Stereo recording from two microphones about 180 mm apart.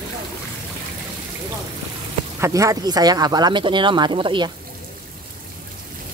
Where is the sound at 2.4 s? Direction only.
15° right (ahead or behind).